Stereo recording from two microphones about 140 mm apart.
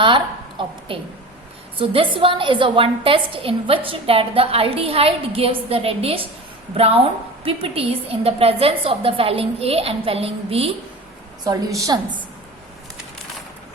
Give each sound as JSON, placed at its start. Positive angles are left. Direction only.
{"t": 0.9, "sound": "a woman's voice", "side_deg": -40}
{"t": 11.4, "sound": "a woman's voice", "side_deg": -25}